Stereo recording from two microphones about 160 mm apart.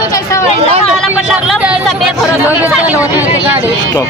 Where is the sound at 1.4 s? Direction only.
5° right (ahead or behind).